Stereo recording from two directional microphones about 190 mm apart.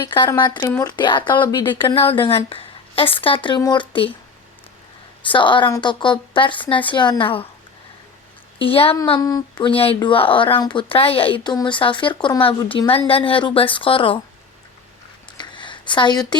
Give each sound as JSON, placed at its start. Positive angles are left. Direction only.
{"t": 0.0, "sound": "speech", "side_deg": 20}
{"t": 5.3, "sound": "speech", "side_deg": 25}
{"t": 8.5, "sound": "a woman's voice", "side_deg": 30}
{"t": 15.4, "sound": "a sound", "side_deg": 25}